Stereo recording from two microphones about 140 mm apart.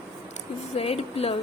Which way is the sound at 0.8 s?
45° left (ahead or behind).